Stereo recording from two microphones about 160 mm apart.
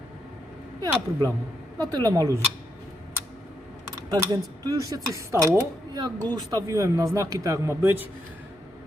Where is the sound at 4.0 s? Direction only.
20° right (ahead or behind).